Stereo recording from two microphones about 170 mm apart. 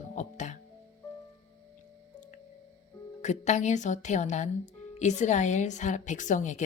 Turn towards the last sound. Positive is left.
turn(degrees=45)  # may be behind; listen again after turning